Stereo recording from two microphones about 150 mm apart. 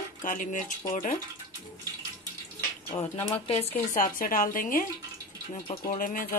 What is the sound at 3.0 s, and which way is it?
Speech, 40° left (ahead or behind).